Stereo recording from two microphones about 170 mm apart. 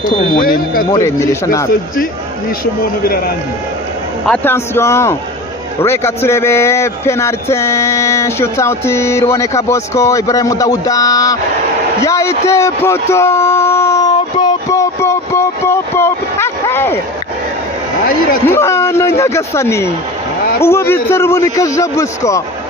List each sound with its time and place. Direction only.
0.0 s speech: 55° left (ahead or behind)
0.9 s speech: 20° left (ahead or behind)
4.3 s a man's voice: 15° left (ahead or behind)
12.0 s a sound: 15° left (ahead or behind)
18.4 s a man's voice: 15° left (ahead or behind)